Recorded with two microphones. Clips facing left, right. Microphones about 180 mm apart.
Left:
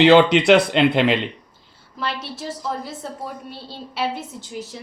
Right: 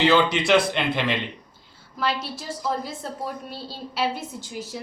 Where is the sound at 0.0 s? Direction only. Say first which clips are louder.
Left 7 dB; 65° left (ahead or behind).